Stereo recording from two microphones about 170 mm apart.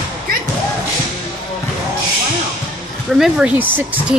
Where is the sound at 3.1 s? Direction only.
5° right (ahead or behind).